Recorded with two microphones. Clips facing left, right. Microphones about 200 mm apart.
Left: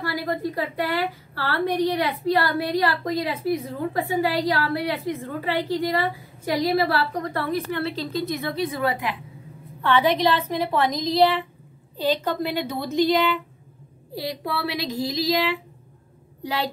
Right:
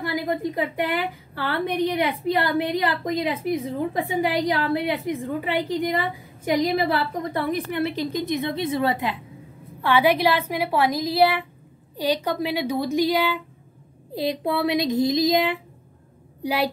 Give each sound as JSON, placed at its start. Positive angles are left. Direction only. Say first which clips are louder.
{"t": 0.0, "sound": "a woman's voice", "louder": "right 1 dB", "side_deg": -20}
{"t": 9.8, "sound": "a woman's voice", "louder": "right 1 dB", "side_deg": -10}
{"t": 14.1, "sound": "child singing", "louder": "right 5 dB", "side_deg": -20}
{"t": 16.4, "sound": "a woman's voice", "louder": "right 4 dB", "side_deg": -10}